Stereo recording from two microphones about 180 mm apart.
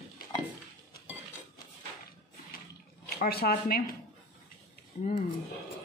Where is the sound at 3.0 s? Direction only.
60° left (ahead or behind).